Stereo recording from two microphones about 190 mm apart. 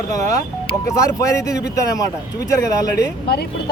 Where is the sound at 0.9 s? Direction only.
15° left (ahead or behind).